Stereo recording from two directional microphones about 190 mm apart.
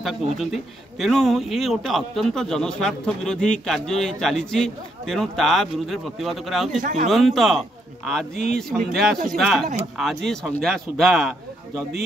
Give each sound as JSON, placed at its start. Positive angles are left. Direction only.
{"t": 0.0, "sound": "speech", "side_deg": 0}
{"t": 6.8, "sound": "speech", "side_deg": -45}
{"t": 7.1, "sound": "speech", "side_deg": 0}